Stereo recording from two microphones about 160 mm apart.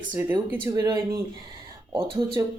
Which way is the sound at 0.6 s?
25° right (ahead or behind).